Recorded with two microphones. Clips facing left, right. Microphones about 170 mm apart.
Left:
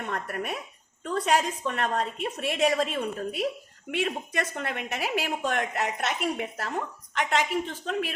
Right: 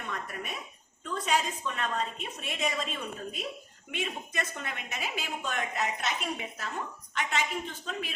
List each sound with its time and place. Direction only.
0.0 s a woman's voice: 60° left (ahead or behind); by 7.4 s 90° left